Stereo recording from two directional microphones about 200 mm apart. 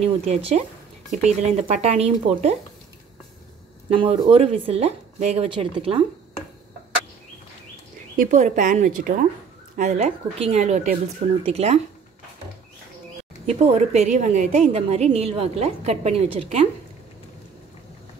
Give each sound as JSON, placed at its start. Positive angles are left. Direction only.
{"t": 0.0, "sound": "a woman's voice", "side_deg": -30}
{"t": 3.9, "sound": "speech", "side_deg": -25}
{"t": 8.2, "sound": "a woman's voice", "side_deg": -40}
{"t": 13.6, "sound": "a woman's voice", "side_deg": -35}